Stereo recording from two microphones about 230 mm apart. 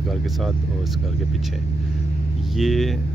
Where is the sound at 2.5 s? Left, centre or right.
Centre.